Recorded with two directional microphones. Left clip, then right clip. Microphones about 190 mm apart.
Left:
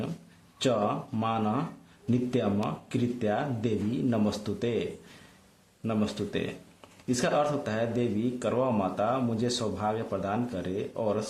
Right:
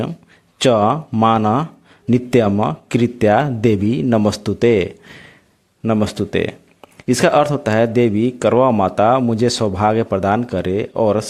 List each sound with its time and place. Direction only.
0.6 s speech: 45° right (ahead or behind)